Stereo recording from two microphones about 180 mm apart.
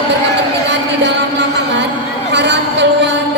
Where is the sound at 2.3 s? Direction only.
75° right (ahead or behind).